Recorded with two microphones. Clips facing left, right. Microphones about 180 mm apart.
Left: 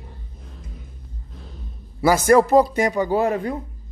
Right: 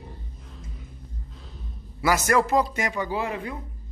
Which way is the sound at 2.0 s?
30° left (ahead or behind).